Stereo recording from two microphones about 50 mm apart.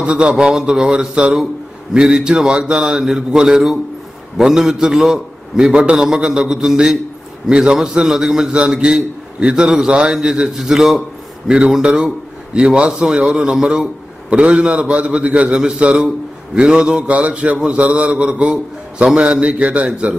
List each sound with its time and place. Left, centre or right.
0.0 s a man's voice: right
11.4 s a man's voice: centre